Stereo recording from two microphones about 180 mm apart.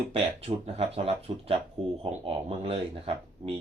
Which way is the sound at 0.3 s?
35° right (ahead or behind).